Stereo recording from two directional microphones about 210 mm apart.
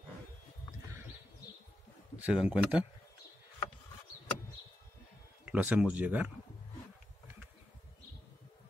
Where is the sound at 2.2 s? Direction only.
5° right (ahead or behind).